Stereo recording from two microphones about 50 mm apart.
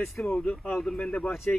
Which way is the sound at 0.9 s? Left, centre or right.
Left.